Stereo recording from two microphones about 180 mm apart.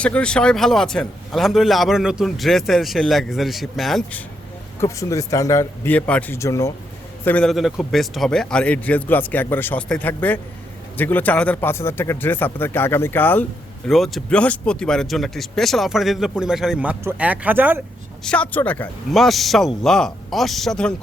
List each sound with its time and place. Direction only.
0.0 s speech: 5° left (ahead or behind)
4.8 s a man's voice: 15° left (ahead or behind)
7.3 s a man's voice: 5° left (ahead or behind)
18.2 s speech: 5° left (ahead or behind)